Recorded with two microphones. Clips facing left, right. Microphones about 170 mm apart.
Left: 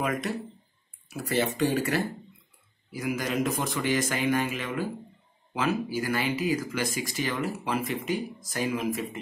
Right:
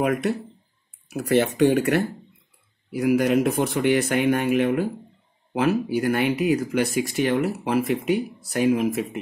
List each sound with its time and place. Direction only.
0.0 s speech: 60° right (ahead or behind)